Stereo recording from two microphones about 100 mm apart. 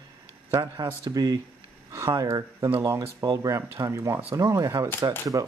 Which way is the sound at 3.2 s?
40° right (ahead or behind).